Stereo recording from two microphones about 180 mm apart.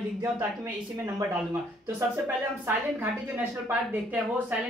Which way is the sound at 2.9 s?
10° right (ahead or behind).